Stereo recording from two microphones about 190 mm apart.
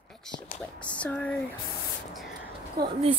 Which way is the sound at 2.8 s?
20° right (ahead or behind).